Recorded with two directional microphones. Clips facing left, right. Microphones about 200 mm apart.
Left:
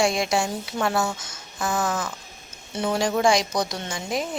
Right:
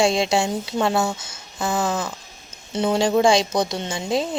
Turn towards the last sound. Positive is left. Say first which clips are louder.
# right 5 dB
turn(degrees=-25)  # may be behind; listen again after turning